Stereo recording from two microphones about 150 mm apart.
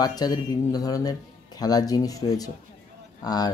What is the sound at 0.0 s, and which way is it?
Speech, 25° left (ahead or behind).